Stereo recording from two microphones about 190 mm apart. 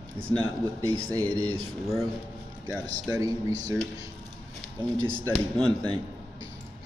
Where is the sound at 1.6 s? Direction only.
Centre (ahead or behind).